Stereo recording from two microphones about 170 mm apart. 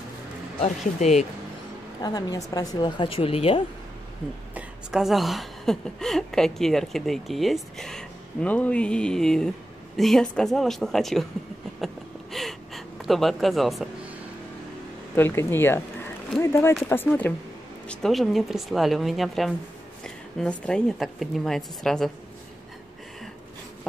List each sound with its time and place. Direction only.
0.6 s speech: 40° left (ahead or behind)
2.0 s speech: 20° left (ahead or behind)
4.6 s a woman's voice: centre (ahead or behind)
11.8 s a sound: centre (ahead or behind)
15.1 s a woman's voice: 15° left (ahead or behind)